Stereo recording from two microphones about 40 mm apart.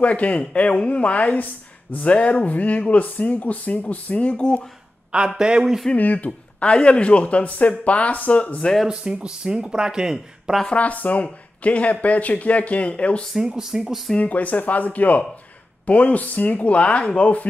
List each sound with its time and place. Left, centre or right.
0.0 s speech: left
2.1 s speech: left
5.4 s speech: right
5.9 s speech: left
6.6 s speech: left
8.8 s speech: right
10.7 s speech: left
13.6 s speech: centre
14.2 s speech: left